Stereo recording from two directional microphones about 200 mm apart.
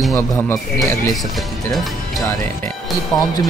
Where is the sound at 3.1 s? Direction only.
20° left (ahead or behind).